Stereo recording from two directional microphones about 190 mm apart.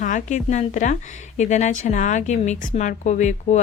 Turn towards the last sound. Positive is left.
turn(degrees=40)  # may be behind; listen again after turning